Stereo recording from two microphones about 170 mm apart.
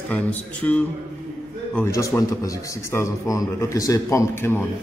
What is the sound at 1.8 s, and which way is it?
A man's voice, 20° left (ahead or behind).